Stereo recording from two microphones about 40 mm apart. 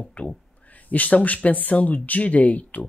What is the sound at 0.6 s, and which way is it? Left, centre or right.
Speech, left.